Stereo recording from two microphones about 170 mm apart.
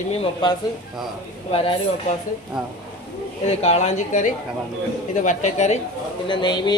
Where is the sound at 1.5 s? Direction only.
35° left (ahead or behind).